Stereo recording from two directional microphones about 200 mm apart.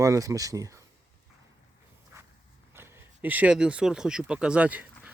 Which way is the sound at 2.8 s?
10° right (ahead or behind).